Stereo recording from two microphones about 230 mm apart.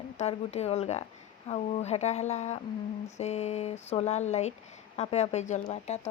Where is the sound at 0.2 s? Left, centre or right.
Left.